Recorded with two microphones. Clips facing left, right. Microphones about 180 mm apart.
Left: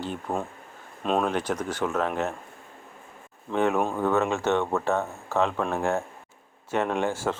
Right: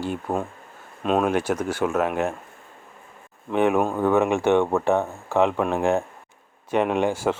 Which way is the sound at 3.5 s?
15° right (ahead or behind).